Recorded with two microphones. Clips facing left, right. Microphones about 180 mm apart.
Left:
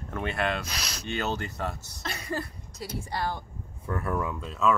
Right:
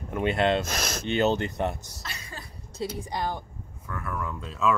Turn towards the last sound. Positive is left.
turn(degrees=0)  # may be behind; listen again after turning